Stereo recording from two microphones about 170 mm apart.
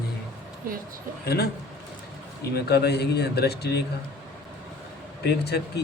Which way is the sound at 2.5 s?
75° left (ahead or behind).